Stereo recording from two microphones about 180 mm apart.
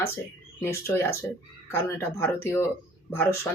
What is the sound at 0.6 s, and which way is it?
Speech, 15° left (ahead or behind).